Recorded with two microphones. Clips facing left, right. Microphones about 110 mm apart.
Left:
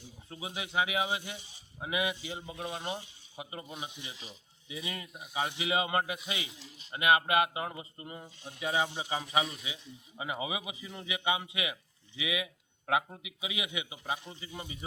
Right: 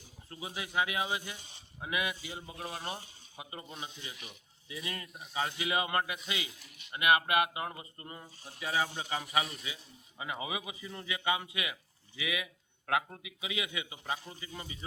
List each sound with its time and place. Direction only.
0.3 s speech: 20° left (ahead or behind)
1.4 s speech: 55° right (ahead or behind)
1.8 s speech: 20° left (ahead or behind)
5.0 s a man's voice: centre (ahead or behind)
5.3 s speech: 20° left (ahead or behind)
9.4 s a man's voice: centre (ahead or behind)
10.2 s a man's voice: 20° left (ahead or behind)